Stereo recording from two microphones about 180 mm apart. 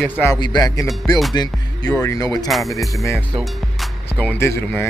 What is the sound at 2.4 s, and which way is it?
Speech, centre (ahead or behind).